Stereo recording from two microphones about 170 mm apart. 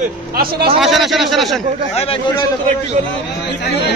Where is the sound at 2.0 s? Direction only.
25° left (ahead or behind).